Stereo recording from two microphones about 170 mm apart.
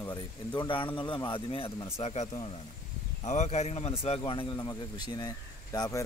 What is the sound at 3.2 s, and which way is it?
A man's voice, 45° left (ahead or behind).